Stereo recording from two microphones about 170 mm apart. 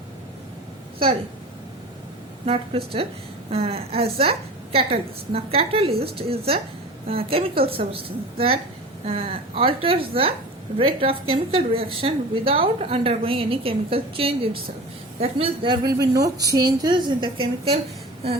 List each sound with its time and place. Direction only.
2.5 s a woman's voice: 35° right (ahead or behind)
16.2 s a woman's voice: 20° right (ahead or behind)